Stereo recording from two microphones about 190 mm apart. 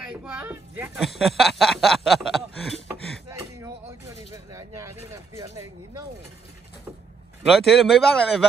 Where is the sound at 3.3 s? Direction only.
15° right (ahead or behind).